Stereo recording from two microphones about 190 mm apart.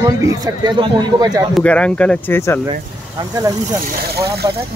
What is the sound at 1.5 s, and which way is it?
Speech, 5° left (ahead or behind).